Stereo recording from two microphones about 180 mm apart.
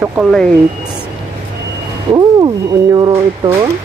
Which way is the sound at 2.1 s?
20° right (ahead or behind).